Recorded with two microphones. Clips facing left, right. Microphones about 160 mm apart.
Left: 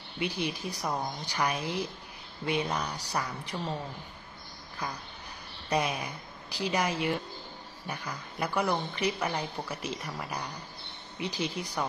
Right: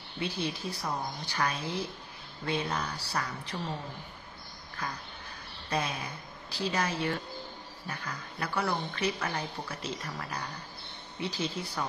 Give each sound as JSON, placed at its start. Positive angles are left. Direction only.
{"t": 0.2, "sound": "speech", "side_deg": 15}
{"t": 5.7, "sound": "speech", "side_deg": 15}